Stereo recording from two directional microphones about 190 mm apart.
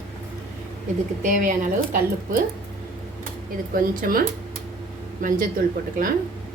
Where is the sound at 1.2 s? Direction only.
45° right (ahead or behind).